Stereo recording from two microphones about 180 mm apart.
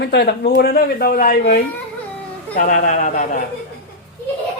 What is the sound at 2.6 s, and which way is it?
Speech, 50° left (ahead or behind).